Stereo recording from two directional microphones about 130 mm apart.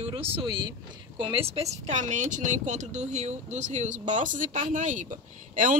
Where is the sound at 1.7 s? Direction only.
60° right (ahead or behind); by 5.7 s 90° right.